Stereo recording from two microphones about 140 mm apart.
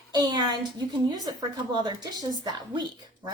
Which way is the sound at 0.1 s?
30° right (ahead or behind).